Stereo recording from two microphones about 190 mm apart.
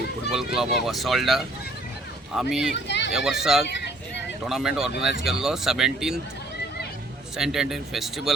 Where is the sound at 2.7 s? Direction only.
65° left (ahead or behind).